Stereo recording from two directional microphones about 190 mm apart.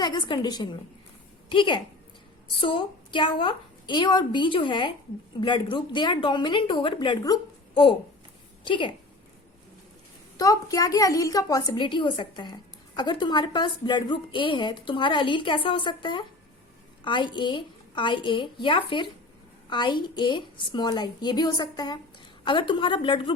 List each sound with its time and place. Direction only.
0.0 s a woman's voice: 25° left (ahead or behind)
10.3 s a woman's voice: 20° left (ahead or behind)